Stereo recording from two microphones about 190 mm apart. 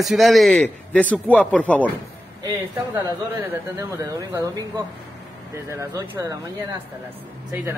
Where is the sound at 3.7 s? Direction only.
15° right (ahead or behind).